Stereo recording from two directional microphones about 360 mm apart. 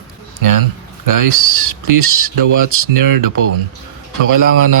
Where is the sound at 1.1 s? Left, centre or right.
Right.